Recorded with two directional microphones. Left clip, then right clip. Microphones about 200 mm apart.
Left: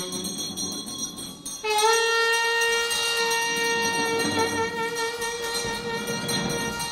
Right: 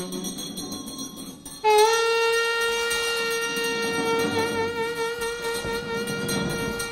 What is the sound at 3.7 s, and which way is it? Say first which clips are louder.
Music: even; 40° right (ahead or behind).